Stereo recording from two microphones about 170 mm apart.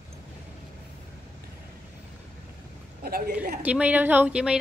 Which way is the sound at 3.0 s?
60° right (ahead or behind).